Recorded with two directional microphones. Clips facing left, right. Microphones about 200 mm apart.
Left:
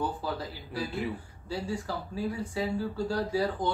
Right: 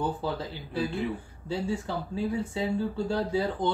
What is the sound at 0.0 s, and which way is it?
Speech, 25° right (ahead or behind).